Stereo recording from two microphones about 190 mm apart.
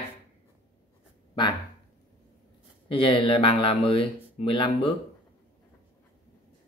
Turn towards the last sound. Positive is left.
turn(degrees=25)  # may be behind; listen again after turning